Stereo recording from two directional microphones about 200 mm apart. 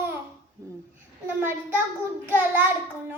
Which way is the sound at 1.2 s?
10° right (ahead or behind).